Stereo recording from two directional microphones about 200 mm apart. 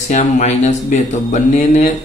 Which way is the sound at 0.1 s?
35° left (ahead or behind).